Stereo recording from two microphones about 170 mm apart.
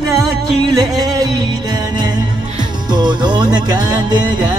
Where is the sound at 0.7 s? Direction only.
20° right (ahead or behind).